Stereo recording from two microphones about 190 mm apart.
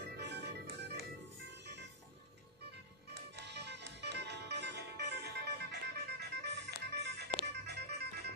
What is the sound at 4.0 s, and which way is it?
Music, 65° right (ahead or behind).